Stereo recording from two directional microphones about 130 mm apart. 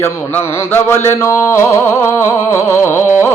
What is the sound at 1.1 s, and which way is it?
Music, 20° left (ahead or behind).